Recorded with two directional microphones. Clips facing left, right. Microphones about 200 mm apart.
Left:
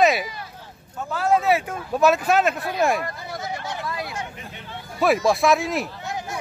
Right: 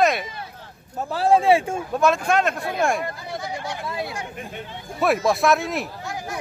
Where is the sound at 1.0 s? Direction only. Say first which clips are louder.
Right 3 dB; 30° right (ahead or behind).